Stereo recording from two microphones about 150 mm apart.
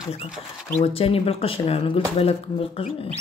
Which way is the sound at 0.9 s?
40° left (ahead or behind).